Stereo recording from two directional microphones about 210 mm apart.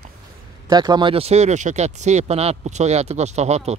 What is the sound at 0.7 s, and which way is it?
Speech, 20° right (ahead or behind).